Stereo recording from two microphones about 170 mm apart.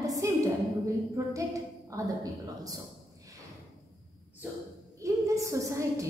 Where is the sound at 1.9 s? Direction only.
20° right (ahead or behind).